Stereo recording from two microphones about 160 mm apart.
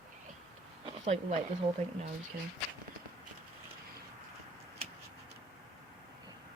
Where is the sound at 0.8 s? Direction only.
45° right (ahead or behind).